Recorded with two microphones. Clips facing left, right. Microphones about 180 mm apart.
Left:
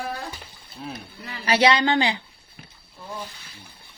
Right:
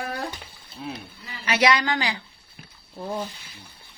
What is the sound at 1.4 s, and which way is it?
Speech, 30° left (ahead or behind).